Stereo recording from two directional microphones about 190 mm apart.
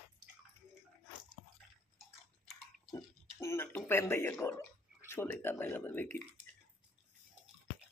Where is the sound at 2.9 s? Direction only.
15° left (ahead or behind).